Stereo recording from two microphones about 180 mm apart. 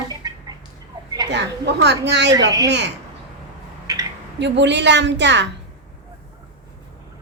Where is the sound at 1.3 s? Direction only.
75° right (ahead or behind).